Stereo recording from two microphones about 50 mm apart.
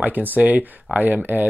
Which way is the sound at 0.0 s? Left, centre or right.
Right.